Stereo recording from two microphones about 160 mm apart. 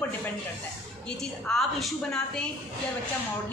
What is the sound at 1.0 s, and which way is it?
A woman's voice, 5° left (ahead or behind).